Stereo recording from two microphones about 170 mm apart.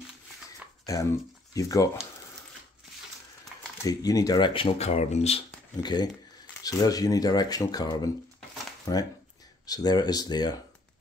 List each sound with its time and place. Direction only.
0.9 s dog: 20° left (ahead or behind)
1.5 s speech: 20° left (ahead or behind)
3.8 s speech: 20° left (ahead or behind); by 5.4 s 40° left (ahead or behind)
5.8 s speech: 25° left (ahead or behind)